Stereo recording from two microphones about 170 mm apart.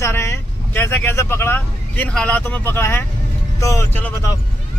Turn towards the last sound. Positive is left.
turn(degrees=20)  # may be behind; listen again after turning